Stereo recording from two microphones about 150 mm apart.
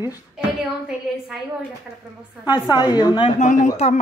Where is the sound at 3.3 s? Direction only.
55° left (ahead or behind).